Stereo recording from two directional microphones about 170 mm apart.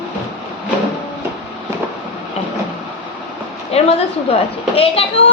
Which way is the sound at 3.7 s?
40° left (ahead or behind).